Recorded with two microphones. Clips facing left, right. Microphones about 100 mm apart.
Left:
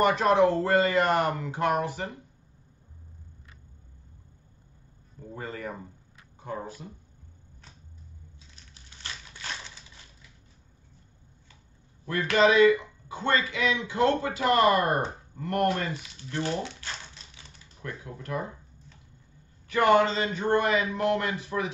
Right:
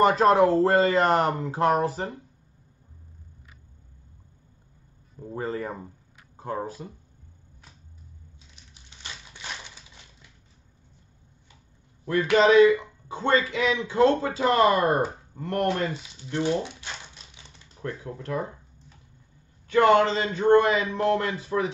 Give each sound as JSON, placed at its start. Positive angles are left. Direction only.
{"t": 0.0, "sound": "speech", "side_deg": -35}
{"t": 5.4, "sound": "speech", "side_deg": -30}
{"t": 6.3, "sound": "a sound", "side_deg": -40}
{"t": 8.7, "sound": "crushing", "side_deg": -20}
{"t": 12.1, "sound": "speech", "side_deg": -25}
{"t": 17.8, "sound": "speech", "side_deg": -30}
{"t": 19.7, "sound": "speech", "side_deg": -25}